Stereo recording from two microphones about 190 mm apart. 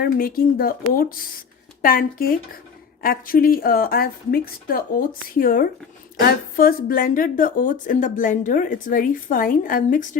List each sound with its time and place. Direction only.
0.0 s speech: 50° left (ahead or behind)